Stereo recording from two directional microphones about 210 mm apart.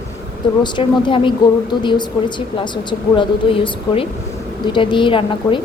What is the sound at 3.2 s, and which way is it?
A woman's voice, 25° left (ahead or behind).